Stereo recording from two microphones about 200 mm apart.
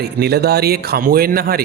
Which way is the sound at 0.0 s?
55° right (ahead or behind).